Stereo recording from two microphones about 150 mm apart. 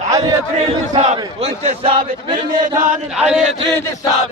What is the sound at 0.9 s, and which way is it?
A man's voice, 50° right (ahead or behind).